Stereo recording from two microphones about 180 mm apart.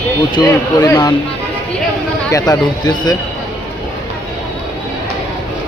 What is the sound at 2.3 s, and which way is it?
Speech, 20° left (ahead or behind).